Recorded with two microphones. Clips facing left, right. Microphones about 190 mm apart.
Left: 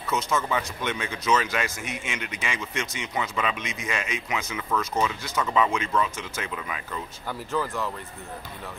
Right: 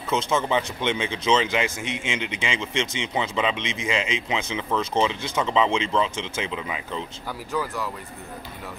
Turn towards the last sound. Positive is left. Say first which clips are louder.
# even
turn(degrees=-5)  # may be behind; listen again after turning